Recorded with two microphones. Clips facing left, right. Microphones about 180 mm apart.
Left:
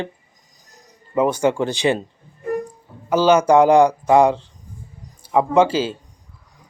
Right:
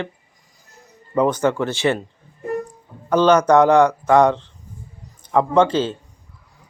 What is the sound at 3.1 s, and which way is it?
A man's voice, 5° left (ahead or behind).